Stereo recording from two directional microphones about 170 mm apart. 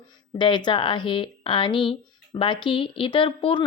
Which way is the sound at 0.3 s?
25° left (ahead or behind).